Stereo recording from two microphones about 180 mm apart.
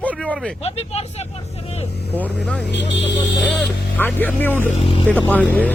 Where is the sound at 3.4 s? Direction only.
10° left (ahead or behind).